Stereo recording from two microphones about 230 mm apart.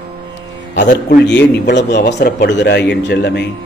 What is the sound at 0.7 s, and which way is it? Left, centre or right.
A man's voice, left.